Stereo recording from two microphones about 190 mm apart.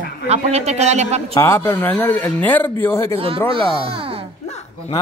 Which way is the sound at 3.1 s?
30° right (ahead or behind).